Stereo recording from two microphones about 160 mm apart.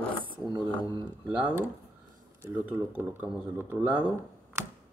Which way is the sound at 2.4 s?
10° right (ahead or behind).